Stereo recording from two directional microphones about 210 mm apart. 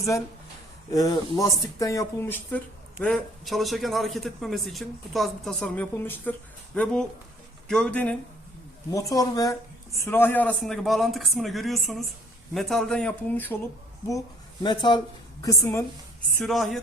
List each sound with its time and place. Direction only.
0.9 s speech: 15° left (ahead or behind)
14.6 s speech: 20° left (ahead or behind)
16.4 s speech: centre (ahead or behind)